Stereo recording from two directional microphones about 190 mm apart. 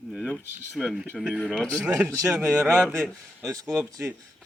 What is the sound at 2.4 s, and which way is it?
Speech, 10° right (ahead or behind).